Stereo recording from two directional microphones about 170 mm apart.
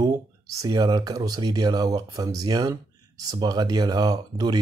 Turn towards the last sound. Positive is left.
turn(degrees=-25)  # may be behind; listen again after turning